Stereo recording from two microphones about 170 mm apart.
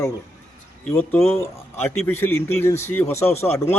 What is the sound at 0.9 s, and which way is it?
Speech, 10° left (ahead or behind).